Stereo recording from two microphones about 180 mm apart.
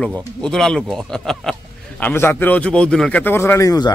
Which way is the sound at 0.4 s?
5° left (ahead or behind).